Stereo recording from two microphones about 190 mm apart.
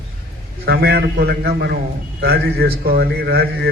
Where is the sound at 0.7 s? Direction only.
55° right (ahead or behind).